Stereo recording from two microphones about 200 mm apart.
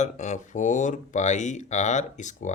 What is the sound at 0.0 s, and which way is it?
Speech, 35° left (ahead or behind).